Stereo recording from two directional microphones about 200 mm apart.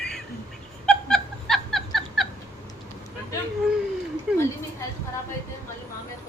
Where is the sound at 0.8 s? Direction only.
5° left (ahead or behind).